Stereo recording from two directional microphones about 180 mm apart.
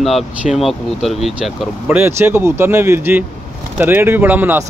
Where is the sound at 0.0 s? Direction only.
Centre (ahead or behind).